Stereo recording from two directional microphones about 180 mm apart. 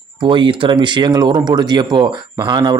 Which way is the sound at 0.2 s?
25° right (ahead or behind).